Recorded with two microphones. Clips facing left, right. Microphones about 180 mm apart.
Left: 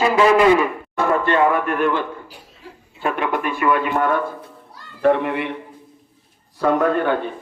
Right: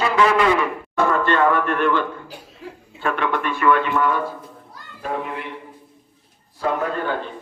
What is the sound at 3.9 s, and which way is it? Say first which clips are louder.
Speech: left 1 dB; 55° left (ahead or behind).